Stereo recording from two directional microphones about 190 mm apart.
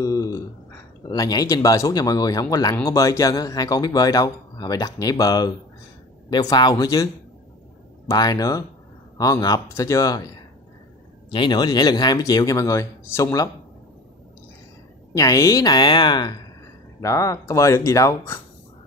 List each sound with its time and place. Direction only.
0.0 s a sound: 15° left (ahead or behind)
1.0 s speech: 20° left (ahead or behind)
8.1 s speech: 20° left (ahead or behind)
11.2 s speech: 25° left (ahead or behind)
15.1 s speech: 15° left (ahead or behind)